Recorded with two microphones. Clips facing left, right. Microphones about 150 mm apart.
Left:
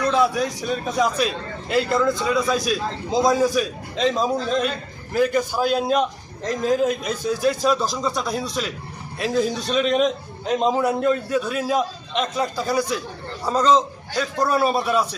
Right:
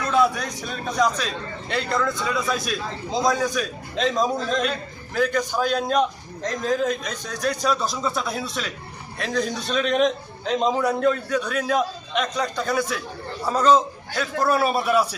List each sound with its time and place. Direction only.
0.1 s a man's voice: centre (ahead or behind)